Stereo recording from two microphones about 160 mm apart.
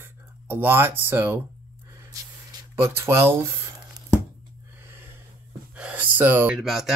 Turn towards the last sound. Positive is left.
turn(degrees=0)  # may be behind; listen again after turning